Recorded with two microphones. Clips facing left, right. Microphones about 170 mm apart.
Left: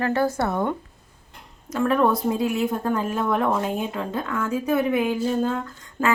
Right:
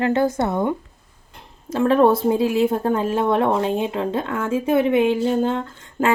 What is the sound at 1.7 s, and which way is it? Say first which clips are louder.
Speech: right 5 dB; 30° right (ahead or behind).